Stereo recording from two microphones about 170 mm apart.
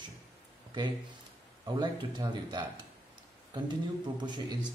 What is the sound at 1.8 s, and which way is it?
Speech, 25° right (ahead or behind).